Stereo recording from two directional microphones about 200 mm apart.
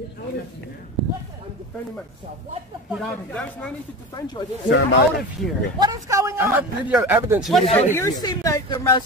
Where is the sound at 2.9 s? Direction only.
Centre (ahead or behind).